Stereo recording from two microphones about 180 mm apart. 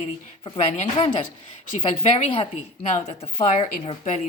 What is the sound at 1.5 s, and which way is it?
Speech, 35° left (ahead or behind).